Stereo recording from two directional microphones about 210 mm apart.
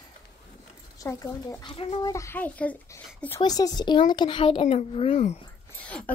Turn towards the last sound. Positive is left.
turn(degrees=5)  # may be behind; listen again after turning